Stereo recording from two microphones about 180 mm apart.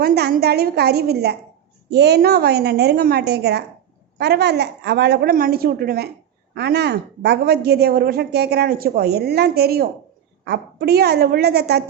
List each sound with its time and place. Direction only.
0.0 s a woman's voice: 60° right (ahead or behind)